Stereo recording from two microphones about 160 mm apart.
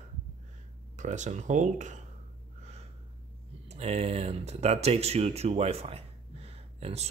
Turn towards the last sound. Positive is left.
turn(degrees=-40)  # may be behind; listen again after turning